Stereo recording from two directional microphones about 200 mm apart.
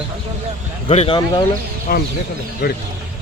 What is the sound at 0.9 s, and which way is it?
Speech, 25° left (ahead or behind).